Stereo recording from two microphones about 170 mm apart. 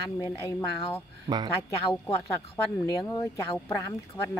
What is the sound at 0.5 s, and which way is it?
Speech, 10° left (ahead or behind).